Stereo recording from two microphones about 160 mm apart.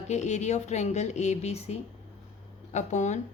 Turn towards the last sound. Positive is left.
turn(degrees=45)  # may be behind; listen again after turning